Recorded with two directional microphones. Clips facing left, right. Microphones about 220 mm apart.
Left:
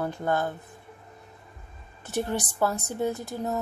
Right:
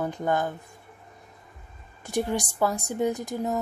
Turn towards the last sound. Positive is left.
turn(degrees=-15)  # may be behind; listen again after turning